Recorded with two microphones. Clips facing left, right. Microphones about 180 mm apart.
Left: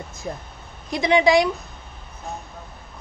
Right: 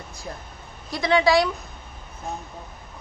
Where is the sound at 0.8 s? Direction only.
20° left (ahead or behind).